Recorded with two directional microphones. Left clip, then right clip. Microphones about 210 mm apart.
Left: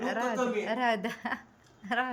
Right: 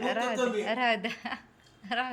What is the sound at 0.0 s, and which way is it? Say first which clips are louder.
A woman's voice: right 2 dB; 10° left (ahead or behind).